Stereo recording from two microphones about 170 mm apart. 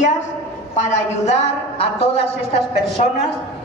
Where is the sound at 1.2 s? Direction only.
40° left (ahead or behind).